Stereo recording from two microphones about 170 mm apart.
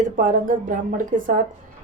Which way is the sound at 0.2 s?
55° right (ahead or behind).